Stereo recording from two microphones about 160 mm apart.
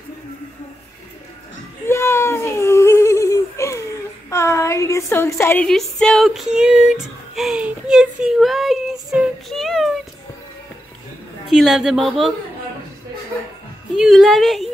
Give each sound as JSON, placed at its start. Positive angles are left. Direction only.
{"t": 1.9, "sound": "a sound", "side_deg": 15}
{"t": 5.7, "sound": "female singing", "side_deg": 5}
{"t": 11.5, "sound": "a woman's voice", "side_deg": 0}
{"t": 13.9, "sound": "a woman's voice", "side_deg": 0}